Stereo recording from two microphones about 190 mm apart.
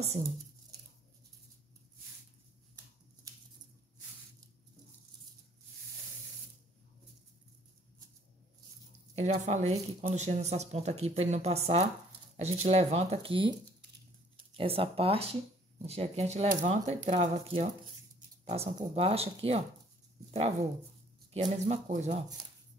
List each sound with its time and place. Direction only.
9.1 s speech: 35° right (ahead or behind)